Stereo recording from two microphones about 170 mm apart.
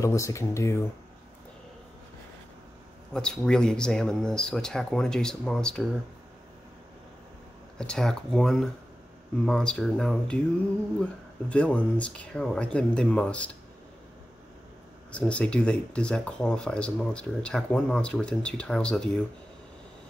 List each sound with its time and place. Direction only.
0.0 s speech: 20° left (ahead or behind)
3.1 s speech: 5° left (ahead or behind)
7.7 s speech: 5° left (ahead or behind)
15.0 s speech: 5° left (ahead or behind)